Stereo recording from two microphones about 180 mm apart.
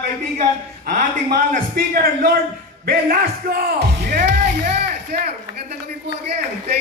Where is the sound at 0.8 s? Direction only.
50° right (ahead or behind).